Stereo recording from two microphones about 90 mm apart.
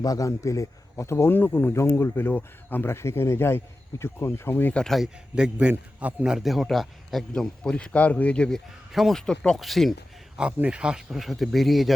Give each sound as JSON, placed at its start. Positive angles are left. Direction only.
{"t": 0.0, "sound": "speech", "side_deg": 40}
{"t": 4.7, "sound": "a man's voice", "side_deg": 5}
{"t": 10.3, "sound": "a man's voice", "side_deg": -10}